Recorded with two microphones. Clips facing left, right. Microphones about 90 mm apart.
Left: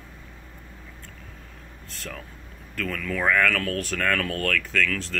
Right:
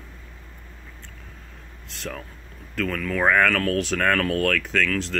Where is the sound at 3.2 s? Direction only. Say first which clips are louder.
Right 3 dB; 25° right (ahead or behind).